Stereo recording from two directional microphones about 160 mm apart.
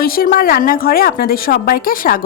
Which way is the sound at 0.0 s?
65° left (ahead or behind).